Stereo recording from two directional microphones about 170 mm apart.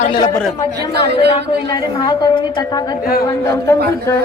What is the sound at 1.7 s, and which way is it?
A woman's voice, 25° left (ahead or behind).